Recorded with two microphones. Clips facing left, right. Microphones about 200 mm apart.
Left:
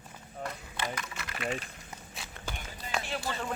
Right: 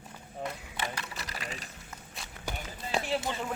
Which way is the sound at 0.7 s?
35° right (ahead or behind).